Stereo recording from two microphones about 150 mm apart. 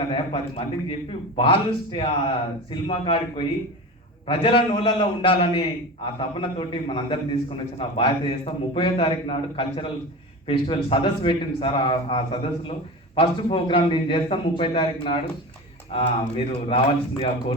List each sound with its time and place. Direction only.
0.1 s a man's voice: 35° left (ahead or behind)